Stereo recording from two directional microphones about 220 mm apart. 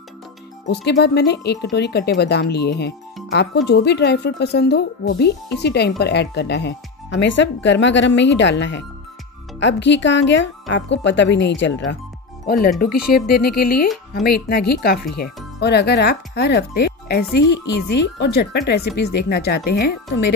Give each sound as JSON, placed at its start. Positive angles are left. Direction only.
{"t": 0.7, "sound": "speech", "side_deg": 50}
{"t": 12.4, "sound": "speech", "side_deg": 40}